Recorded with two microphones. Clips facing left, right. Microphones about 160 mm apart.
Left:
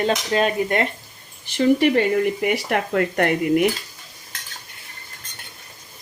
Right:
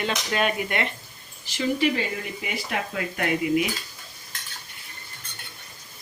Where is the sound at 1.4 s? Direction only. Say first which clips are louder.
Left 7 dB; 55° left (ahead or behind).